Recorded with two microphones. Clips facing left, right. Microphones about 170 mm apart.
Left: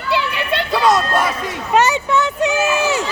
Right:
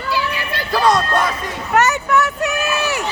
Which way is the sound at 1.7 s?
25° left (ahead or behind).